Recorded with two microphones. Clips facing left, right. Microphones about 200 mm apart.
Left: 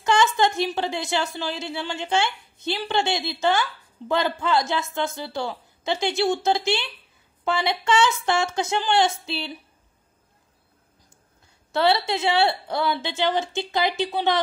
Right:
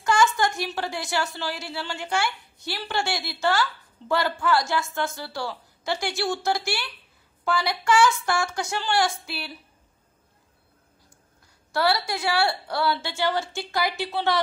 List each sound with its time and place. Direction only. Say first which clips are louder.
0.0 s a woman's voice: left 2 dB; 20° left (ahead or behind)
11.7 s a woman's voice: left 3 dB; 25° left (ahead or behind)